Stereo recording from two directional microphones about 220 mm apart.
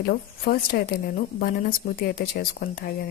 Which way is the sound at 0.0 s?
45° left (ahead or behind).